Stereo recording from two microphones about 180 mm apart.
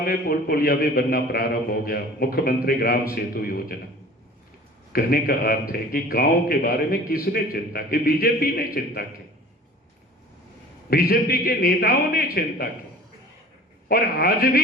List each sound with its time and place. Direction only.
0.0 s a man's voice: 55° left (ahead or behind)
4.9 s a man's voice: 55° left (ahead or behind)
10.8 s a man's voice: 55° left (ahead or behind)
13.8 s a man's voice: 55° left (ahead or behind)